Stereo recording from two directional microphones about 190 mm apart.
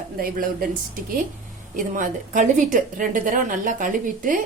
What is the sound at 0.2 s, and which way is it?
Speech, 50° right (ahead or behind).